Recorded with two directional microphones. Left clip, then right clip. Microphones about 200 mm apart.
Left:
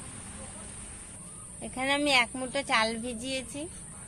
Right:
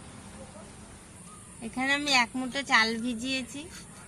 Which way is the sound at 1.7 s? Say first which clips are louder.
Even; 40° left (ahead or behind).